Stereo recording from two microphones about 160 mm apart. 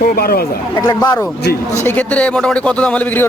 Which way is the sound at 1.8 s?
10° left (ahead or behind).